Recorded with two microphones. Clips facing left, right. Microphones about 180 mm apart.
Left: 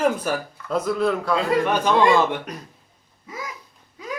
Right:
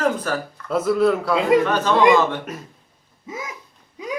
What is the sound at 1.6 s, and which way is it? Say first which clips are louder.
Speech: right 1 dB; 15° left (ahead or behind).